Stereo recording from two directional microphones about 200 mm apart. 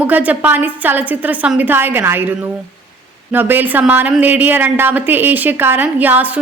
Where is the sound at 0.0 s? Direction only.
5° right (ahead or behind).